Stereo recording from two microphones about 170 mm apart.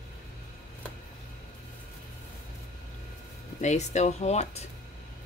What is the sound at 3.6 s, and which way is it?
Speech, 45° left (ahead or behind).